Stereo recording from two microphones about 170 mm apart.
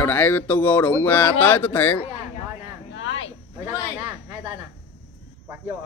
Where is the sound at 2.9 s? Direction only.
90° left.